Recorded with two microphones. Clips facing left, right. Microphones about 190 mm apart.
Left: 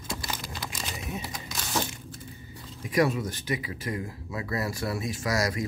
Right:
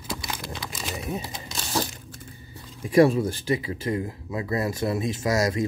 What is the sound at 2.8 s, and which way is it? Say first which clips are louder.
Speech: right 7 dB; 30° right (ahead or behind).